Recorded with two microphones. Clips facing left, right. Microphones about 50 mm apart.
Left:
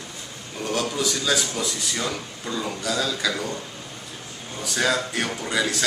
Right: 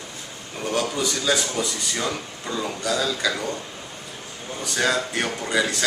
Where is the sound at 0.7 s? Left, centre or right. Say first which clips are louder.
Right 1 dB; centre.